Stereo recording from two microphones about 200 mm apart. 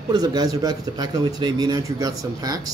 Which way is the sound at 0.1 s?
20° right (ahead or behind).